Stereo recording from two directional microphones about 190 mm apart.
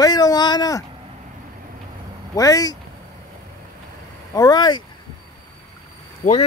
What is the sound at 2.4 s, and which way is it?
Speech, 20° left (ahead or behind).